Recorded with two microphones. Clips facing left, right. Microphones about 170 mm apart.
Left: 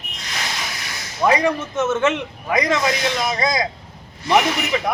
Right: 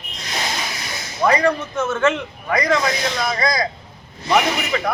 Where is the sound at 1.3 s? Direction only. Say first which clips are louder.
Even; 20° left (ahead or behind).